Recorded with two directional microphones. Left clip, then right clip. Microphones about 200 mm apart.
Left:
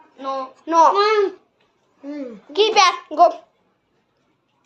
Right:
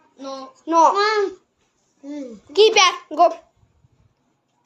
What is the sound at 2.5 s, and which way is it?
Speech, 35° right (ahead or behind).